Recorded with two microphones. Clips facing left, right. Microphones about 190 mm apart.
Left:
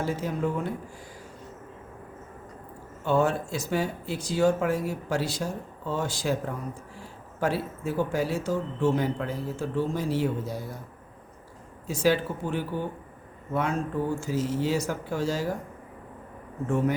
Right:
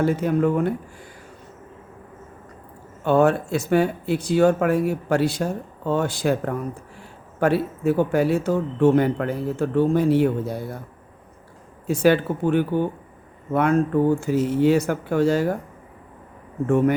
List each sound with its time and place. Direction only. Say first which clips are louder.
0.0 s speech: right 8 dB; 60° right (ahead or behind)
3.0 s speech: right 6 dB; 60° right (ahead or behind)
11.9 s speech: right 6 dB; 60° right (ahead or behind)
16.6 s speech: right 7 dB; 60° right (ahead or behind)